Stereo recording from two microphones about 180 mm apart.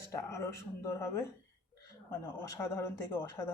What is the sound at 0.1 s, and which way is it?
Speech, 15° left (ahead or behind).